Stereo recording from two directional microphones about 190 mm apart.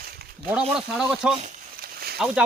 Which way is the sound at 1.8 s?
55° right (ahead or behind).